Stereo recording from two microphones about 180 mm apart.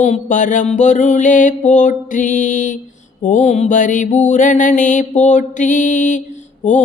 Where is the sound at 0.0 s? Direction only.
45° left (ahead or behind).